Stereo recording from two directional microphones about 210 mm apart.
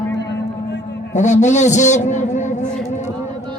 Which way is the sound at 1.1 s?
35° left (ahead or behind).